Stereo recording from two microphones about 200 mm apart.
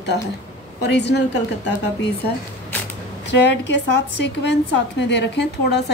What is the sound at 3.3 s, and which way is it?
A woman's voice, 60° left (ahead or behind).